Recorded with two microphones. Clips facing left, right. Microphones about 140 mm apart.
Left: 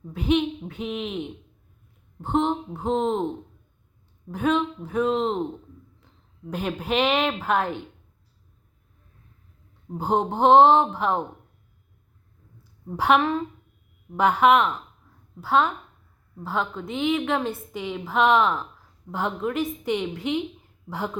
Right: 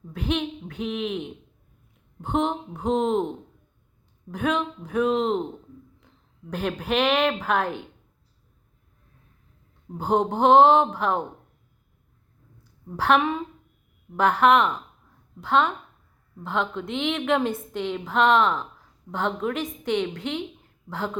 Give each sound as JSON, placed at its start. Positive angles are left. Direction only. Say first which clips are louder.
{"t": 0.1, "sound": "a woman's voice", "louder": "left 4 dB", "side_deg": 5}
{"t": 2.5, "sound": "a woman's voice", "louder": "even", "side_deg": 5}
{"t": 4.3, "sound": "a woman's voice", "louder": "left 2 dB", "side_deg": 5}
{"t": 6.5, "sound": "a woman's voice", "louder": "even", "side_deg": 10}
{"t": 9.9, "sound": "a woman's voice", "louder": "right 1 dB", "side_deg": 10}
{"t": 13.0, "sound": "a woman's voice", "louder": "left 1 dB", "side_deg": 0}
{"t": 14.2, "sound": "a woman's voice", "louder": "even", "side_deg": 10}